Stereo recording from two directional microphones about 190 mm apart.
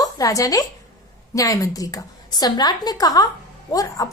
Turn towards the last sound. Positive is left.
turn(degrees=20)  # may be behind; listen again after turning